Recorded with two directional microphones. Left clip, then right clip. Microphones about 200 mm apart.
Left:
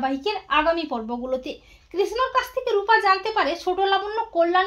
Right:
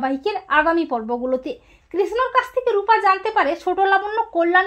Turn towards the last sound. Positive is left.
turn(degrees=-35)  # may be behind; listen again after turning